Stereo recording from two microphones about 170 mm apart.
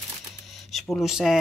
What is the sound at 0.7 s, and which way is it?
Speech, centre (ahead or behind).